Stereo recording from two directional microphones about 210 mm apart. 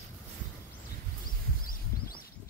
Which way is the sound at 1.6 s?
45° left (ahead or behind).